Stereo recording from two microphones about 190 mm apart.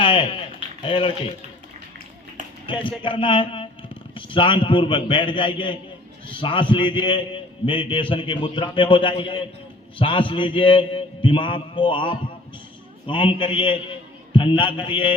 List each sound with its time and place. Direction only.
0.0 s a sound: 25° left (ahead or behind)
0.8 s a man's voice: 25° left (ahead or behind)
2.6 s a man's voice: 25° left (ahead or behind)